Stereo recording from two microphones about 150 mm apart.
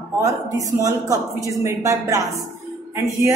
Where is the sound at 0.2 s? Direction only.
20° right (ahead or behind).